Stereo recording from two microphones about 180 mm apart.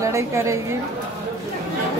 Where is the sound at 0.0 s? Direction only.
15° right (ahead or behind).